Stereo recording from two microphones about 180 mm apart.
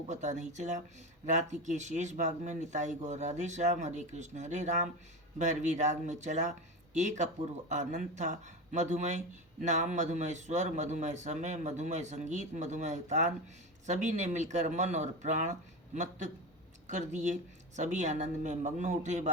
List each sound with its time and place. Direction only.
0.1 s speech: 40° right (ahead or behind)